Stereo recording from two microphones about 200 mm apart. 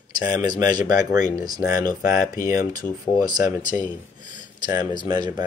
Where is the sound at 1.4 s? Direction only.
20° right (ahead or behind).